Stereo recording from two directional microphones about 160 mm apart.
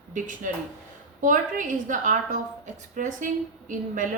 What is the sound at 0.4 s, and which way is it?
A woman's voice, 55° right (ahead or behind).